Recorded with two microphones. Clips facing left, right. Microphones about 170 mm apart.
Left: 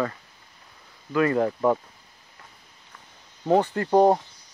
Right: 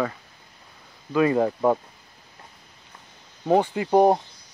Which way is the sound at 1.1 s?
15° right (ahead or behind).